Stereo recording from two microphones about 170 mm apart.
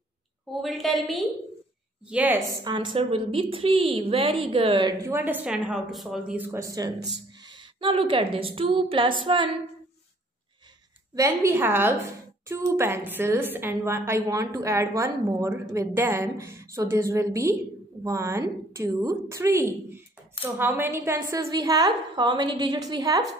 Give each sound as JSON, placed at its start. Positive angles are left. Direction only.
{"t": 0.5, "sound": "a woman's voice", "side_deg": 0}
{"t": 2.6, "sound": "a woman's voice", "side_deg": -25}
{"t": 5.0, "sound": "a woman's voice", "side_deg": -15}
{"t": 11.1, "sound": "a woman's voice", "side_deg": -15}